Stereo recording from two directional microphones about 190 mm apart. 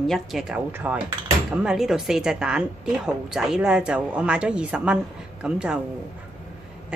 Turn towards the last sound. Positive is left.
turn(degrees=-5)  # may be behind; listen again after turning